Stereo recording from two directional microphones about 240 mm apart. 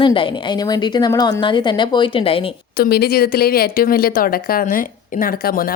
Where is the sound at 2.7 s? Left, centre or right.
Left.